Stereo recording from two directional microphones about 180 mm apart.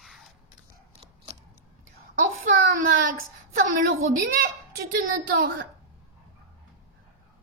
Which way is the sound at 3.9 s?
55° right (ahead or behind).